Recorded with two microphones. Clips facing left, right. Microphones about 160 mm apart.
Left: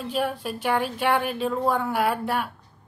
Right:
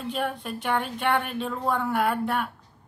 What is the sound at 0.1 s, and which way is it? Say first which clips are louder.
Speech: left 3 dB; 5° left (ahead or behind).